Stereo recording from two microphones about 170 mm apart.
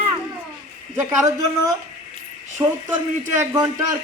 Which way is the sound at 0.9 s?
20° right (ahead or behind).